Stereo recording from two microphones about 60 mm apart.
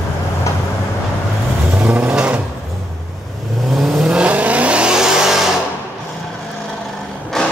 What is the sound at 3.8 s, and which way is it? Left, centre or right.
Vehicle, centre.